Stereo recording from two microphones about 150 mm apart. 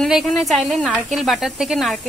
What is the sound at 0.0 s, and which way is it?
A woman's voice, centre (ahead or behind).